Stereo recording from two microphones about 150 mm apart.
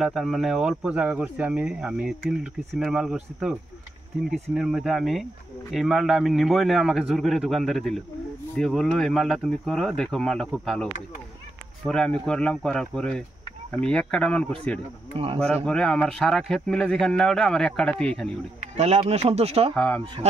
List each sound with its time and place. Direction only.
0.0 s speech: centre (ahead or behind)
4.3 s speech: 5° right (ahead or behind)
15.1 s speech: 40° right (ahead or behind)
15.4 s speech: 5° left (ahead or behind)
18.8 s speech: 45° right (ahead or behind)
19.7 s speech: 10° left (ahead or behind)